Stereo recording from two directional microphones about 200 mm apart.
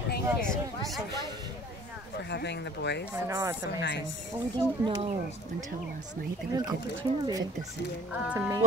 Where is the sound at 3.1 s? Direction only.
15° right (ahead or behind).